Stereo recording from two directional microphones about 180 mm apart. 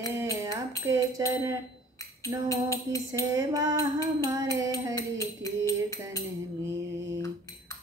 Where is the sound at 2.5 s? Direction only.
20° left (ahead or behind).